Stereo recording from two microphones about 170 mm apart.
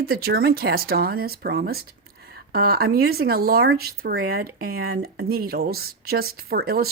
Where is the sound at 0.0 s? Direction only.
65° right (ahead or behind).